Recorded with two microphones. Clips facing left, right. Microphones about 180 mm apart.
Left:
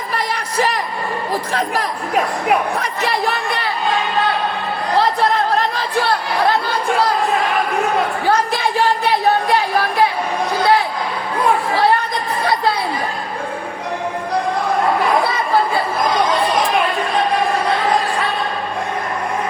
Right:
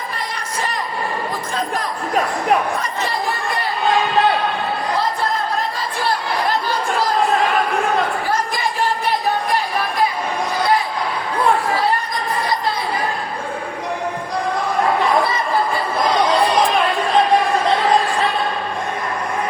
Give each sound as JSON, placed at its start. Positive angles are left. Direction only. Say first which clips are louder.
{"t": 0.1, "sound": "music", "louder": "left 5 dB", "side_deg": 70}
{"t": 1.3, "sound": "speech", "louder": "left 3 dB", "side_deg": 70}
{"t": 2.7, "sound": "chatter", "louder": "left 2 dB", "side_deg": 65}
{"t": 4.9, "sound": "music", "louder": "left 8 dB", "side_deg": 70}